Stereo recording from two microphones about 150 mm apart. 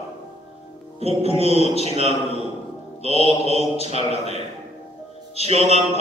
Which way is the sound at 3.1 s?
45° left (ahead or behind).